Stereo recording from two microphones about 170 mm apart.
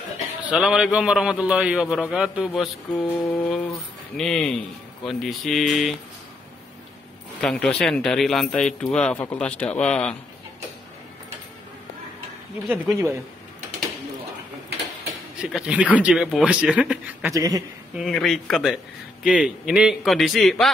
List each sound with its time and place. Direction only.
0.4 s a man's voice: 5° right (ahead or behind)
7.4 s a man's voice: 5° left (ahead or behind)
12.6 s a man's voice: 5° right (ahead or behind)
15.4 s a man's voice: 5° right (ahead or behind)
17.3 s speech: 20° right (ahead or behind)
17.9 s a man's voice: centre (ahead or behind)